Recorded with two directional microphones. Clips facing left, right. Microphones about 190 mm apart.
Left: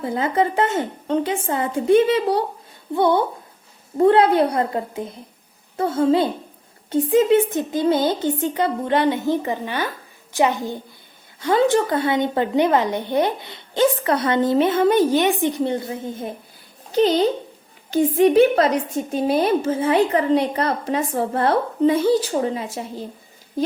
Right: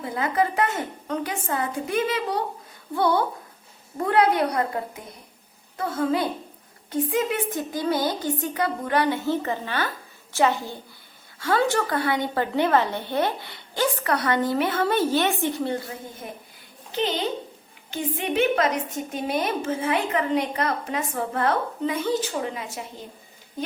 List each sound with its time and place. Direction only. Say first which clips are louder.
0.0 s a woman's voice: left 4 dB; 25° left (ahead or behind)
16.9 s a woman's voice: left 9 dB; 40° left (ahead or behind)